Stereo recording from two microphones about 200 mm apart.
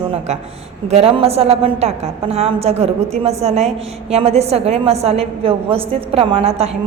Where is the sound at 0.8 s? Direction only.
30° right (ahead or behind).